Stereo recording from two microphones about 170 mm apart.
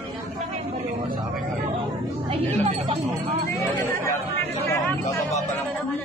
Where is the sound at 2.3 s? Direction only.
35° right (ahead or behind).